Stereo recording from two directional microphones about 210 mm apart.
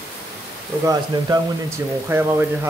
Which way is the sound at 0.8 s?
15° right (ahead or behind).